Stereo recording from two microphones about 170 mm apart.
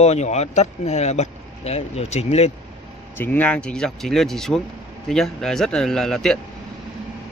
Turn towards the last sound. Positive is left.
turn(degrees=0)  # may be behind; listen again after turning